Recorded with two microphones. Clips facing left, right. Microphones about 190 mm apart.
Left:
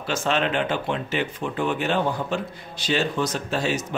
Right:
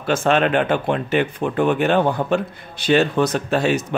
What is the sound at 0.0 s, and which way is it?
Speech, 55° right (ahead or behind).